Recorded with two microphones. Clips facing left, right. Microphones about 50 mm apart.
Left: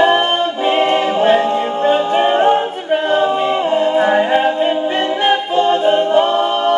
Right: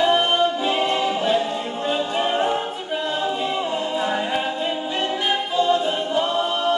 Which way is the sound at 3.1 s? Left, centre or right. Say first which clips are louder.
Left 9 dB; left.